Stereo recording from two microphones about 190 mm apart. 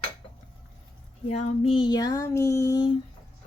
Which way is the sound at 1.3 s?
30° left (ahead or behind).